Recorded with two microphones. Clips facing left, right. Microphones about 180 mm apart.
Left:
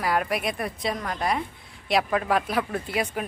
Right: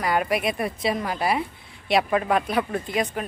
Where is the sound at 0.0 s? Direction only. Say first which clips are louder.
Right 2 dB; centre (ahead or behind).